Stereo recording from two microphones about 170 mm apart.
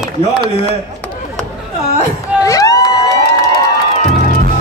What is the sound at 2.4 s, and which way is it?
Crowd, 20° left (ahead or behind).